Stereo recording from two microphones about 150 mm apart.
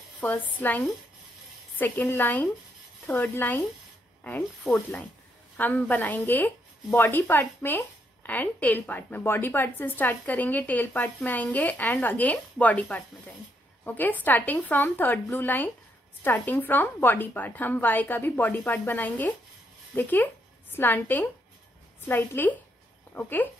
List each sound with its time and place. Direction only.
0.2 s a woman's voice: 10° left (ahead or behind)